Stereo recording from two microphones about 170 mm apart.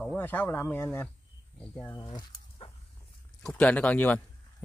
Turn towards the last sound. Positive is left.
turn(degrees=10)  # may be behind; listen again after turning